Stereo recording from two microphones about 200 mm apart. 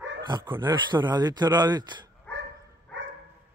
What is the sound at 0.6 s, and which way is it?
Speech, 20° right (ahead or behind).